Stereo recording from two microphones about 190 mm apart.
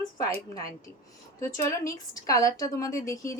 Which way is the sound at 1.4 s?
15° left (ahead or behind).